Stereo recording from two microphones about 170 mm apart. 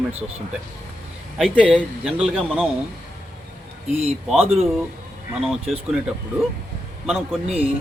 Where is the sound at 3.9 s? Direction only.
35° right (ahead or behind).